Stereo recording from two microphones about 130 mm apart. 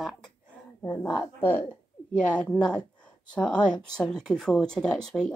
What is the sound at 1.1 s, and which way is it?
Speech, 10° left (ahead or behind).